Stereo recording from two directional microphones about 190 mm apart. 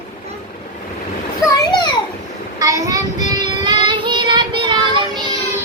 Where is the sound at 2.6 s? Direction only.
15° right (ahead or behind).